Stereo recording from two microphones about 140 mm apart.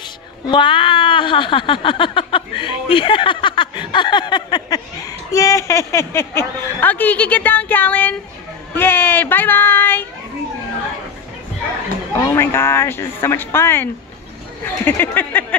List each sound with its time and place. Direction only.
0.5 s speech: 35° left (ahead or behind); by 10.0 s 15° left (ahead or behind)
12.2 s speech: 20° left (ahead or behind)